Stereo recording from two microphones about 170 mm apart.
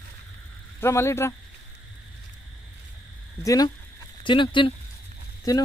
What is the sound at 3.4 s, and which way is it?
Speech, 20° left (ahead or behind).